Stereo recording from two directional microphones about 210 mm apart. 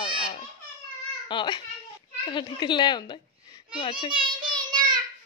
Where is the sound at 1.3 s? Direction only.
20° left (ahead or behind).